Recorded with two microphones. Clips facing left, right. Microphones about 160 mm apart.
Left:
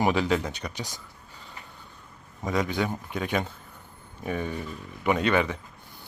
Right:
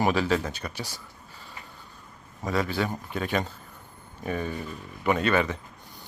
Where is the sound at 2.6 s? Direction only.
20° left (ahead or behind).